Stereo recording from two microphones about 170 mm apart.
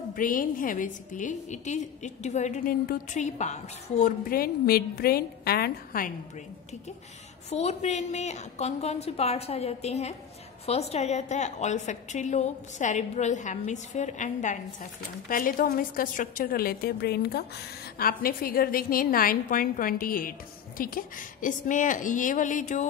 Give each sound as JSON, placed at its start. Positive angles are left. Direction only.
{"t": 0.1, "sound": "a woman's voice", "side_deg": 55}
{"t": 4.3, "sound": "a woman's voice", "side_deg": 60}
{"t": 7.4, "sound": "a woman's voice", "side_deg": 40}
{"t": 17.9, "sound": "a woman's voice", "side_deg": 60}